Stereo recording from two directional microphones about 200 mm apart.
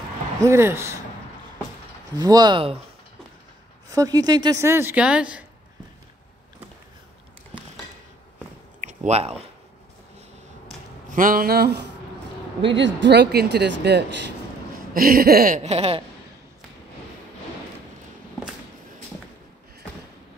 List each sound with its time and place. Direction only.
0.4 s a woman's voice: 15° right (ahead or behind)
2.1 s speech: 20° right (ahead or behind)
3.9 s a woman's voice: 20° right (ahead or behind)
8.8 s speech: 35° right (ahead or behind)
11.1 s a sound: 45° right (ahead or behind)
12.6 s speech: 65° right (ahead or behind)
15.0 s a sound: 45° right (ahead or behind); by 16.0 s 30° right (ahead or behind)